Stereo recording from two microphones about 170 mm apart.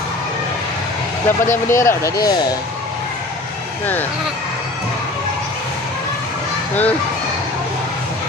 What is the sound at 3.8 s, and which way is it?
Speech, 10° left (ahead or behind).